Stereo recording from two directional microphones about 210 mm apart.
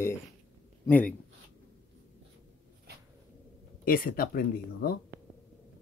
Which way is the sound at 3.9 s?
45° left (ahead or behind).